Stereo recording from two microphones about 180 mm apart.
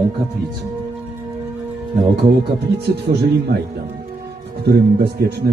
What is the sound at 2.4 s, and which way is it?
A man's voice, 65° right (ahead or behind).